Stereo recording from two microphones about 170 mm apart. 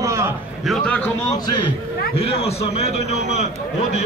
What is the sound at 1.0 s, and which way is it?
Speech, 20° left (ahead or behind).